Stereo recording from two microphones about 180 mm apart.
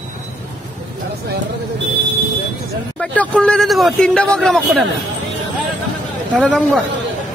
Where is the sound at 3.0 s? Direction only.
5° left (ahead or behind).